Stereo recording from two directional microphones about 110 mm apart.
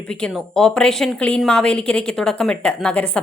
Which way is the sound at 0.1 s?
10° left (ahead or behind).